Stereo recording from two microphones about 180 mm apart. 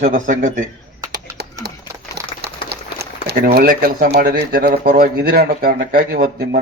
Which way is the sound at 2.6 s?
65° right (ahead or behind).